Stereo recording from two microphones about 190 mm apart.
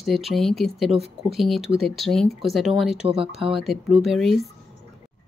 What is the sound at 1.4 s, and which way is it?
Speech, centre (ahead or behind).